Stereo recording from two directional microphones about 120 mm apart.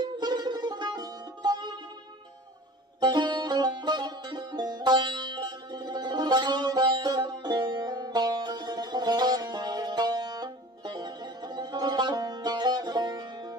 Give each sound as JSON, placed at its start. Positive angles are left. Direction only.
{"t": 0.2, "sound": "music", "side_deg": -35}
{"t": 3.0, "sound": "music", "side_deg": -40}